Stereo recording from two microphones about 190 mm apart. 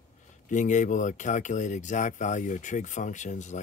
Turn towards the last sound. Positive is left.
turn(degrees=40)  # may be behind; listen again after turning